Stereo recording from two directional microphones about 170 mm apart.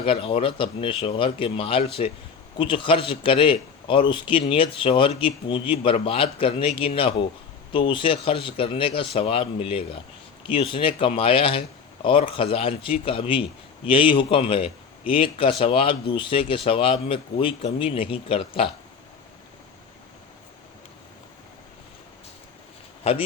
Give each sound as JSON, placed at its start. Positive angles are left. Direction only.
{"t": 0.0, "sound": "a man's voice", "side_deg": 30}